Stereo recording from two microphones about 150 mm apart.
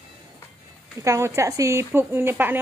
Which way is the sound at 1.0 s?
20° right (ahead or behind).